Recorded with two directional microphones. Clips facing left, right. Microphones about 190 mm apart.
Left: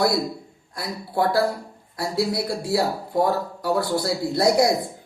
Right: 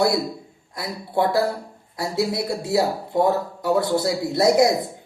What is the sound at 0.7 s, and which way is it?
A man's voice, 25° right (ahead or behind).